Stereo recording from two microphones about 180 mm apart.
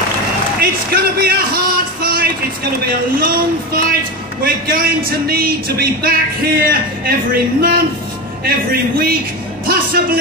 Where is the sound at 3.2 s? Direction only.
55° right (ahead or behind).